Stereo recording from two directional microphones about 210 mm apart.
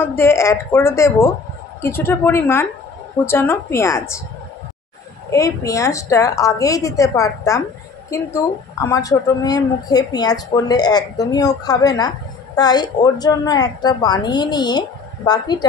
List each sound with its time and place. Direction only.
0.0 s a woman's voice: 10° left (ahead or behind)
5.3 s a woman's voice: 15° left (ahead or behind)